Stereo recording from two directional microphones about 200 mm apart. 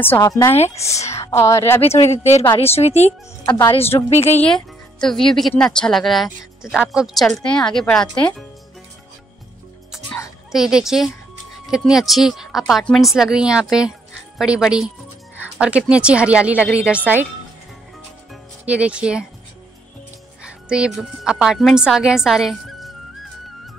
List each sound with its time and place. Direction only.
0.0 s a woman's voice: 10° left (ahead or behind)
2.0 s speech: 35° left (ahead or behind)
4.4 s a woman's voice: 5° left (ahead or behind)
10.5 s speech: centre (ahead or behind)
18.3 s music: 5° right (ahead or behind)
20.6 s speech: 5° right (ahead or behind)